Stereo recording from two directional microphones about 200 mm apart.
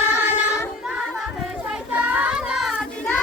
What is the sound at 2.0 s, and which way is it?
Child singing, 5° right (ahead or behind).